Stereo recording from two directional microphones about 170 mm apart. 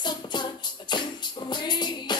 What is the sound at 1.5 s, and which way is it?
Music, 25° left (ahead or behind).